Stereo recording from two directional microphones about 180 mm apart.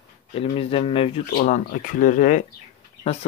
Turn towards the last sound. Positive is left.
turn(degrees=35)  # may be behind; listen again after turning